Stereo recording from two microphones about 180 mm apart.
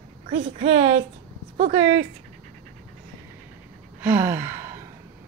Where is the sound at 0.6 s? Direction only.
35° right (ahead or behind).